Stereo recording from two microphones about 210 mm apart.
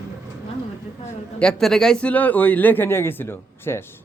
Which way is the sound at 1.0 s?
5° left (ahead or behind).